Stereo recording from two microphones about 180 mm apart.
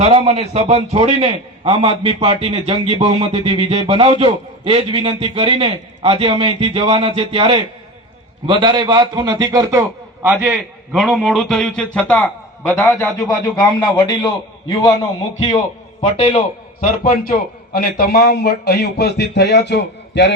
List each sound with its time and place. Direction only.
0.0 s a man's voice: 30° right (ahead or behind)
10.2 s a man's voice: 10° right (ahead or behind); by 13.1 s 10° left (ahead or behind)
13.1 s speech: 20° left (ahead or behind)
16.0 s a man's voice: 35° left (ahead or behind); by 20.3 s 70° left (ahead or behind)